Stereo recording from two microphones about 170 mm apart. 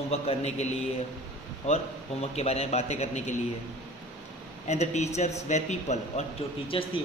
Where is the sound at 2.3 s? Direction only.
35° left (ahead or behind).